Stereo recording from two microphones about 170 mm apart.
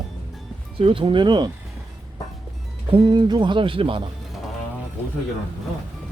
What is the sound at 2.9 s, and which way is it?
Speech, 25° right (ahead or behind).